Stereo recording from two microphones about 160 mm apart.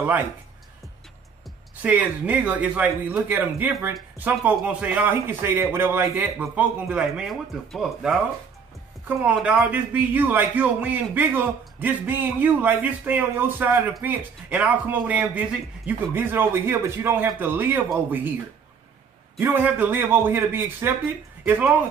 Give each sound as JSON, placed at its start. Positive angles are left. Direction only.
{"t": 1.8, "sound": "a man's voice", "side_deg": -10}
{"t": 19.4, "sound": "a man's voice", "side_deg": -10}